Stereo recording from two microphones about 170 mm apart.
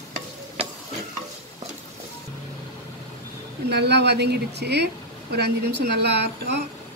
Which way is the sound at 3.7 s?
75° right (ahead or behind).